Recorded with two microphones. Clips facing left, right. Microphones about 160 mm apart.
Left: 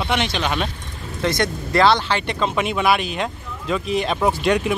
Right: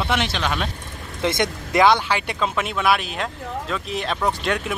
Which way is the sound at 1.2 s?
20° right (ahead or behind).